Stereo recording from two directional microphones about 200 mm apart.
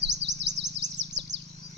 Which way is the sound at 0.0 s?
60° right (ahead or behind).